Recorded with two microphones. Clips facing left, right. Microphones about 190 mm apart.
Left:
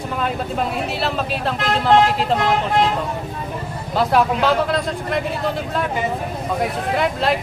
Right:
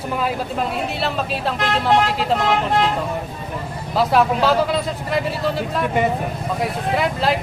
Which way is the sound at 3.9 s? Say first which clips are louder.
Even; centre (ahead or behind).